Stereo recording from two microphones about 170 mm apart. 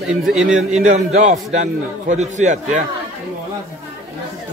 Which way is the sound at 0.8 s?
45° right (ahead or behind).